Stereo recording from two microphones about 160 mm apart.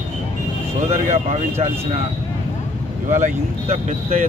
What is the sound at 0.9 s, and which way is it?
Speech, 45° right (ahead or behind).